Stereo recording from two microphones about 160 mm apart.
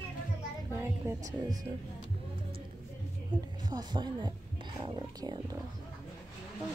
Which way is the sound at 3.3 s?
30° right (ahead or behind).